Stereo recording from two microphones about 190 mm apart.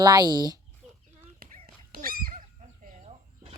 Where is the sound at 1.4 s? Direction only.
50° right (ahead or behind).